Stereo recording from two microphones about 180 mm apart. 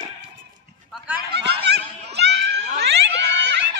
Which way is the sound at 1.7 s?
70° right (ahead or behind).